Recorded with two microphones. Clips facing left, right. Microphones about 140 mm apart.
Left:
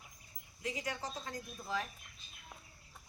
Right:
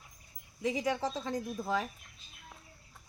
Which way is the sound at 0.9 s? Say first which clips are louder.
Right 9 dB; 90° right.